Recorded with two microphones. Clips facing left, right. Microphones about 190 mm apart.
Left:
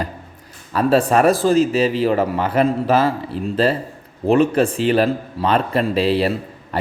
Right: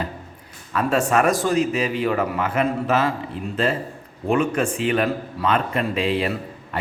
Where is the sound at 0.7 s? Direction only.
30° left (ahead or behind).